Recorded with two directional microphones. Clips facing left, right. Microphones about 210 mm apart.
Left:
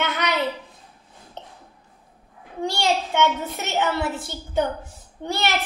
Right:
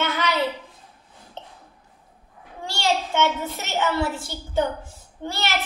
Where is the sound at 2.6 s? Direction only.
20° left (ahead or behind).